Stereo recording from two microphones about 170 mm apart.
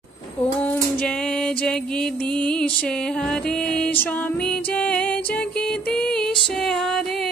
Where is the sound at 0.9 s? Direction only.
5° left (ahead or behind).